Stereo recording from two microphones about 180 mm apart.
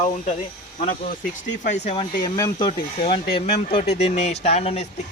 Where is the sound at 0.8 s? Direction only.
45° left (ahead or behind).